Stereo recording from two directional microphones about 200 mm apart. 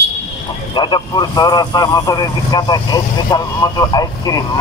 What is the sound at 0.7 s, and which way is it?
Speech, 20° left (ahead or behind).